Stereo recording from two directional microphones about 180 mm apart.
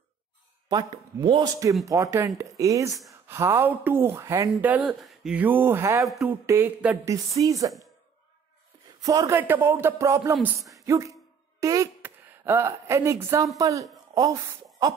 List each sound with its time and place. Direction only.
0.7 s speech: 25° right (ahead or behind)
6.0 s speech: centre (ahead or behind)
6.4 s speech: 15° right (ahead or behind)
8.8 s speech: 20° right (ahead or behind)